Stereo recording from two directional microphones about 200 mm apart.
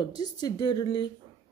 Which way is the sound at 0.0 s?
20° left (ahead or behind).